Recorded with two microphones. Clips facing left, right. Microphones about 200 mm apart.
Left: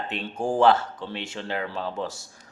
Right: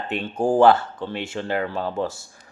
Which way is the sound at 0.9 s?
50° right (ahead or behind).